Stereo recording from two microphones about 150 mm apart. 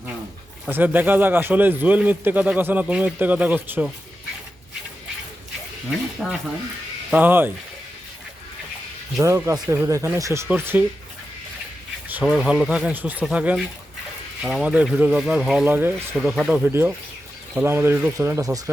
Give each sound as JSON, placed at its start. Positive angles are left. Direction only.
{"t": 0.7, "sound": "a man's voice", "side_deg": -10}
{"t": 6.1, "sound": "a man's voice", "side_deg": -5}
{"t": 9.1, "sound": "a man's voice", "side_deg": -20}
{"t": 12.0, "sound": "a man's voice", "side_deg": -10}
{"t": 16.6, "sound": "a man's voice", "side_deg": -15}